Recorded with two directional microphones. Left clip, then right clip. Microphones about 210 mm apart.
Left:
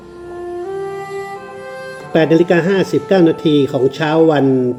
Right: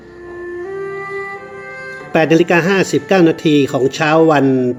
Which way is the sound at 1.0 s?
55° left (ahead or behind).